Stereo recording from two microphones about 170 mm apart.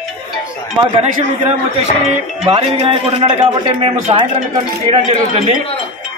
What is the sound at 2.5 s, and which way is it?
A man's voice, 30° right (ahead or behind).